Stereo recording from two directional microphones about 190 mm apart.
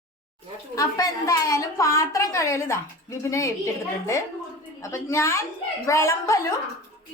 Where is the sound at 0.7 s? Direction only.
20° left (ahead or behind).